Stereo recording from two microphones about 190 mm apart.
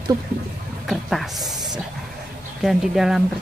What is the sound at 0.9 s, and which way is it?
Speech, centre (ahead or behind).